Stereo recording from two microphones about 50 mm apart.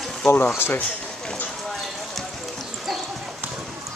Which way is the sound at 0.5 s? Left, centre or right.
Left.